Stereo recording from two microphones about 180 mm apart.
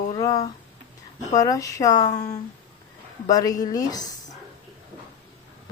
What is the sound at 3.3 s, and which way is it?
Speech, 20° left (ahead or behind).